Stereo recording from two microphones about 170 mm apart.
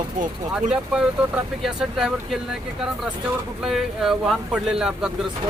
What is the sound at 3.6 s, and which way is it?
Speech, centre (ahead or behind).